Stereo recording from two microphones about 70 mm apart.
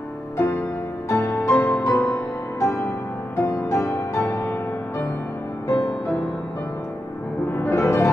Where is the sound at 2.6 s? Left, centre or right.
Left.